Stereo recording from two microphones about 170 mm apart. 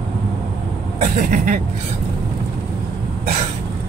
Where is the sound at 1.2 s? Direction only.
50° right (ahead or behind).